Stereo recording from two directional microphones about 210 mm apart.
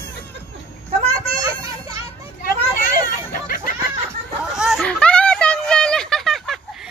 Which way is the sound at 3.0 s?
45° left (ahead or behind).